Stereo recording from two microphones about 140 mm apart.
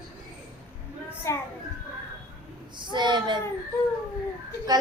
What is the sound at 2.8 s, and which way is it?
Speech, 35° right (ahead or behind).